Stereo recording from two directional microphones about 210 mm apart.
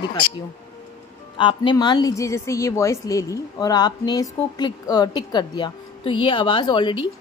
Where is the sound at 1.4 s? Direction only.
25° left (ahead or behind).